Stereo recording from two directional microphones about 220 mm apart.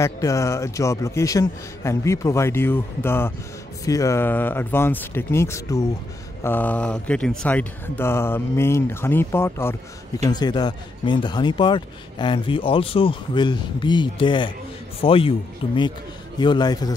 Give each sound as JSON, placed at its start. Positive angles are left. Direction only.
{"t": 0.0, "sound": "a man's voice", "side_deg": 15}